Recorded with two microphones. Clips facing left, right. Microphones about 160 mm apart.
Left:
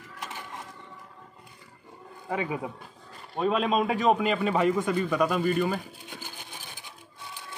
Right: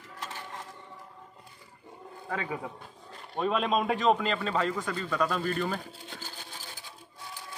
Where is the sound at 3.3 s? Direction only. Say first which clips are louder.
Left 3 dB; 5° left (ahead or behind); by 6.9 s 20° left (ahead or behind).